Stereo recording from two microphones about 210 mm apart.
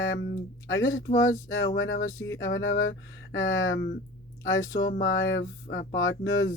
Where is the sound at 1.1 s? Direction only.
15° left (ahead or behind).